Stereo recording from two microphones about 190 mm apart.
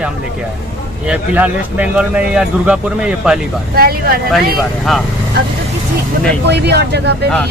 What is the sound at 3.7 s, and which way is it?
Speech, 50° right (ahead or behind).